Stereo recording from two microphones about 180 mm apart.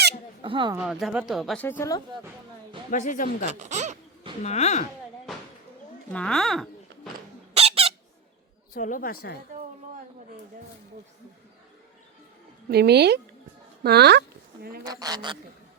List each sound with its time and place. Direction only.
0.4 s speech: 30° right (ahead or behind)
0.8 s speech: centre (ahead or behind)
1.6 s speech: 15° left (ahead or behind)
2.9 s speech: 45° left (ahead or behind)
3.4 s speech: 40° right (ahead or behind)
4.4 s speech: 40° left (ahead or behind)
6.1 s speech: 5° left (ahead or behind)
7.5 s squeak: 35° right (ahead or behind)
8.7 s speech: 50° left (ahead or behind)
12.6 s a woman's voice: 65° right (ahead or behind)
14.8 s speech: 20° right (ahead or behind)